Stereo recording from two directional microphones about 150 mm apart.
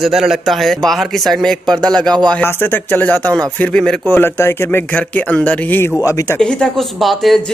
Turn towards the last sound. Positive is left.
turn(degrees=0)  # may be behind; listen again after turning